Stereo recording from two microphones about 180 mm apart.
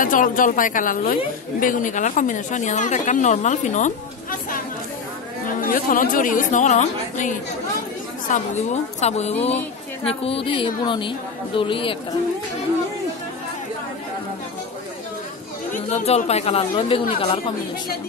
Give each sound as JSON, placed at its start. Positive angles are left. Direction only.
{"t": 0.0, "sound": "speech", "side_deg": 50}
{"t": 5.6, "sound": "a woman's voice", "side_deg": 50}
{"t": 15.7, "sound": "a woman's voice", "side_deg": 35}